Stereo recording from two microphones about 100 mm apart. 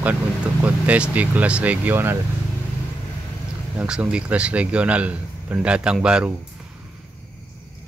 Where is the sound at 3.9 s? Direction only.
10° right (ahead or behind).